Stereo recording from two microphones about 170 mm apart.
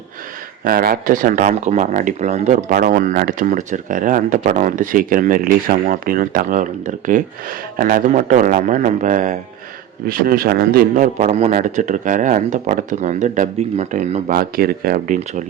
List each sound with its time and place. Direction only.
0.6 s speech: 60° right (ahead or behind)
10.1 s speech: 60° right (ahead or behind)